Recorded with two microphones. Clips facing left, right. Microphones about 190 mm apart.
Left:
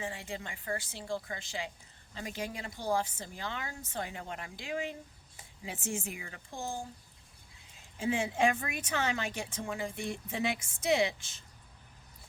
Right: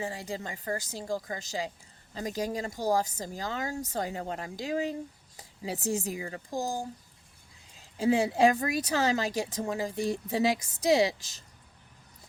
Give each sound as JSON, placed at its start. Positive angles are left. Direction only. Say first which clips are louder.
{"t": 0.0, "sound": "speech", "louder": "right 4 dB", "side_deg": -35}
{"t": 7.9, "sound": "speech", "louder": "right 6 dB", "side_deg": -35}